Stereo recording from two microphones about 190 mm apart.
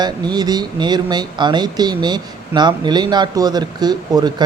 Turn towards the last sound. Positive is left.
turn(degrees=-20)  # may be behind; listen again after turning